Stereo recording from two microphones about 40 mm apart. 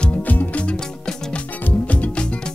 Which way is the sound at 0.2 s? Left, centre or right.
Left.